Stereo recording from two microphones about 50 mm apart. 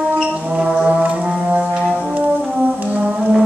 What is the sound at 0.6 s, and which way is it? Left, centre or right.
Music, centre.